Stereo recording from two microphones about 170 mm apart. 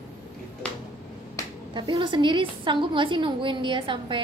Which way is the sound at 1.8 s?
30° right (ahead or behind).